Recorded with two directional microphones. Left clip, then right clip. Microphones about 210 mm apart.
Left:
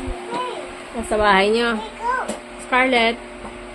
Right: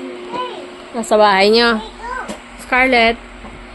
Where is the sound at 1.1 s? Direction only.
40° right (ahead or behind).